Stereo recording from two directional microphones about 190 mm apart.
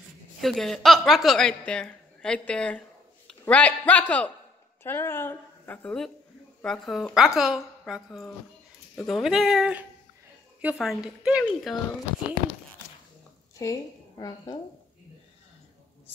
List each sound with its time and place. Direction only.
0.4 s a woman's voice: centre (ahead or behind)
13.6 s a woman's voice: 20° left (ahead or behind)